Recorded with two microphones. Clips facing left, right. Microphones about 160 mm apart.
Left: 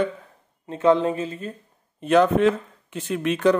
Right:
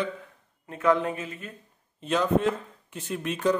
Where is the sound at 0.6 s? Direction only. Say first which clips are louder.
Left 5 dB; 30° left (ahead or behind).